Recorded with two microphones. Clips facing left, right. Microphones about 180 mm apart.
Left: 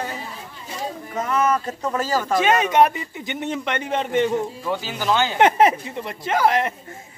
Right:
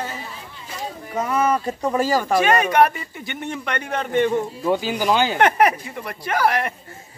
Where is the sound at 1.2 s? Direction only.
10° right (ahead or behind).